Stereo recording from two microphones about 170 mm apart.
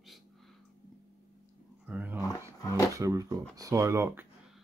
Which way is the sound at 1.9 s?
10° right (ahead or behind).